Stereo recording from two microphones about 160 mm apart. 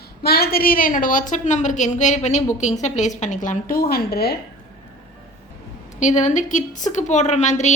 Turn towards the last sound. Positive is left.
turn(degrees=45)  # may be behind; listen again after turning